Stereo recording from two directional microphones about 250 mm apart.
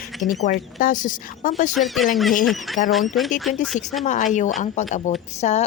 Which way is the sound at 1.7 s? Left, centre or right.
Centre.